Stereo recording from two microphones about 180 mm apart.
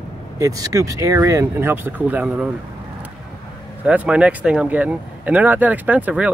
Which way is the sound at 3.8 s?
5° right (ahead or behind).